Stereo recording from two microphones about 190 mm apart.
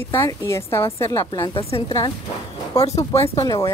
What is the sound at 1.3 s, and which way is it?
Speech, 25° left (ahead or behind).